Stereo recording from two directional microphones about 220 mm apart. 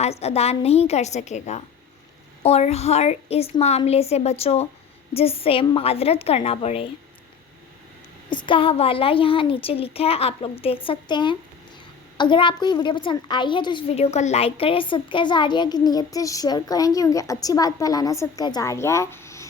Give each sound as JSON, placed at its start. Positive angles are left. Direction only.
{"t": 0.0, "sound": "a woman's voice", "side_deg": 30}
{"t": 8.3, "sound": "a woman's voice", "side_deg": 20}